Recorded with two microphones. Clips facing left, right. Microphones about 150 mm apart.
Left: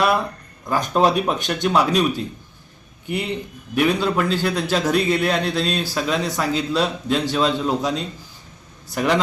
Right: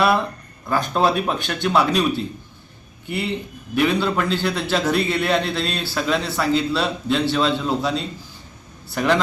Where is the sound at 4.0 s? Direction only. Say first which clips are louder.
Left 1 dB; 10° left (ahead or behind).